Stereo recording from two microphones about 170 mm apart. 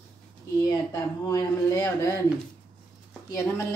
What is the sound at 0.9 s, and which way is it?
Speech, 20° left (ahead or behind).